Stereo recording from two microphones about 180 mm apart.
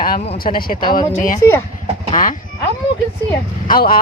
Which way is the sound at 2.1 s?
50° left (ahead or behind).